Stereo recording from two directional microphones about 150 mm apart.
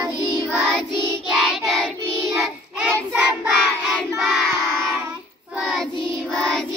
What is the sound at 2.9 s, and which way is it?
Child singing, 10° right (ahead or behind).